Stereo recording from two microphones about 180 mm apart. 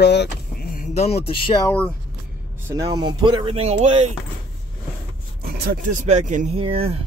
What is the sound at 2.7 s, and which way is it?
Speech, 20° right (ahead or behind).